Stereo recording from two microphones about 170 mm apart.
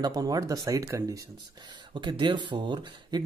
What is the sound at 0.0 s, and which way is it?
Speech, 20° right (ahead or behind).